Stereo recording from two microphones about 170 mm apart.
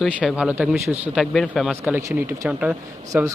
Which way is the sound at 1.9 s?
10° right (ahead or behind).